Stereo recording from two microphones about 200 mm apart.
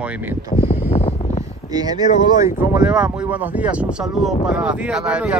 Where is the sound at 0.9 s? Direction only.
30° left (ahead or behind).